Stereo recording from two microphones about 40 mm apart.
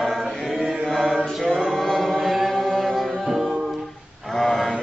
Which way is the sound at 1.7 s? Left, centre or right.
Centre.